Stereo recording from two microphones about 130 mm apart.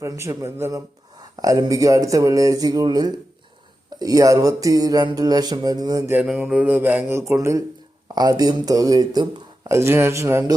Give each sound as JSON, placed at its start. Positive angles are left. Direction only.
{"t": 0.0, "sound": "speech", "side_deg": -25}
{"t": 6.3, "sound": "mantra", "side_deg": -10}
{"t": 8.0, "sound": "speech", "side_deg": -30}